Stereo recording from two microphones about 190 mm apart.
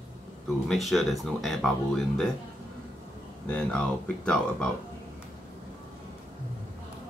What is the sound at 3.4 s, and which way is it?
Speech, 5° left (ahead or behind).